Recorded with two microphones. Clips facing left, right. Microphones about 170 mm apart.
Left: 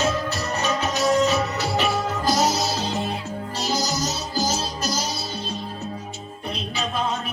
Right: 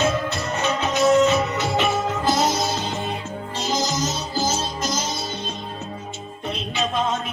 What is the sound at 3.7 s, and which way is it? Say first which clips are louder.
Music: right 2 dB; 35° left (ahead or behind).